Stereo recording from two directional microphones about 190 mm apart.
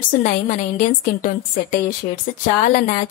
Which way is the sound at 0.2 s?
40° left (ahead or behind).